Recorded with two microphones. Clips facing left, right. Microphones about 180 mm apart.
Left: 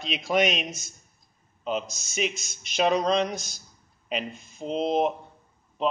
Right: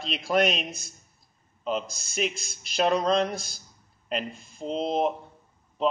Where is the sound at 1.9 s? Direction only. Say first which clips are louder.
Even; 55° right (ahead or behind).